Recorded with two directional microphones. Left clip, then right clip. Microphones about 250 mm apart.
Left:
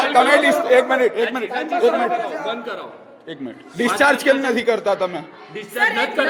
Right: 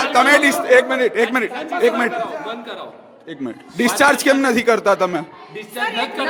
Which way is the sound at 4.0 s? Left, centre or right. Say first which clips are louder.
Right 2 dB; right.